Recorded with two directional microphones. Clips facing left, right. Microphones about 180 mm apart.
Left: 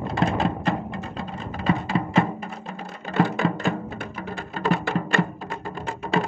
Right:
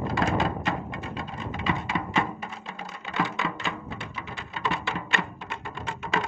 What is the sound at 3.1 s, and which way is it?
Music, 50° left (ahead or behind).